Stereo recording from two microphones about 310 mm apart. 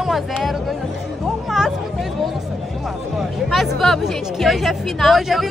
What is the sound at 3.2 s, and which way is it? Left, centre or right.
Speech, centre.